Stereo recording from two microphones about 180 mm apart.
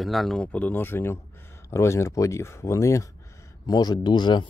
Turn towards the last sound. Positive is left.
turn(degrees=25)  # may be behind; listen again after turning